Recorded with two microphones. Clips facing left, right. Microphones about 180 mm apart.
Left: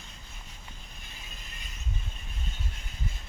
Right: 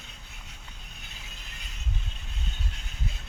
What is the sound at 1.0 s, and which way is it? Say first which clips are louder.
Vehicle: even; 75° right (ahead or behind).